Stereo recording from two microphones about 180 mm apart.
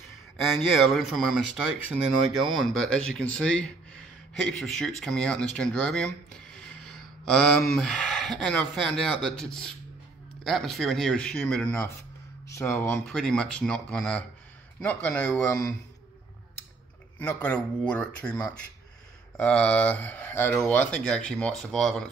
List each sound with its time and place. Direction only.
0.5 s speech: centre (ahead or behind)
2.4 s speech: centre (ahead or behind)
13.0 s speech: 5° left (ahead or behind)
17.2 s speech: 10° left (ahead or behind)